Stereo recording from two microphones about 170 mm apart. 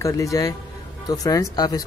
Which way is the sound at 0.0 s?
20° left (ahead or behind).